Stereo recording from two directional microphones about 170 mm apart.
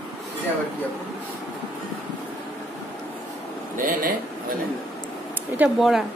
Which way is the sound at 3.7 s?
55° right (ahead or behind).